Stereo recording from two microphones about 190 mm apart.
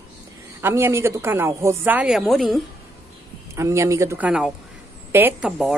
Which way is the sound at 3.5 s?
15° right (ahead or behind).